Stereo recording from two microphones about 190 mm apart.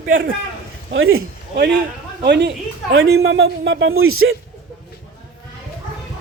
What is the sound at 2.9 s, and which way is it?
A man's voice, 85° right.